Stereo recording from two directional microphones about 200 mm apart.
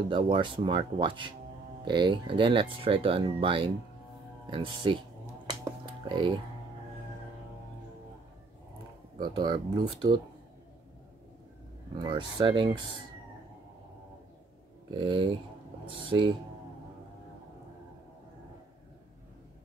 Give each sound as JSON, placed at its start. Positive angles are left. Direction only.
{"t": 0.1, "sound": "speech", "side_deg": -25}
{"t": 5.5, "sound": "finger snapping", "side_deg": -25}
{"t": 9.2, "sound": "speech", "side_deg": -20}
{"t": 12.0, "sound": "speech", "side_deg": -25}
{"t": 14.9, "sound": "speech", "side_deg": -25}